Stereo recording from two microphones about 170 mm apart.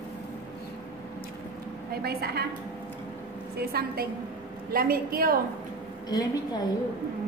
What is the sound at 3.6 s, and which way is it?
A woman's voice, 65° right (ahead or behind).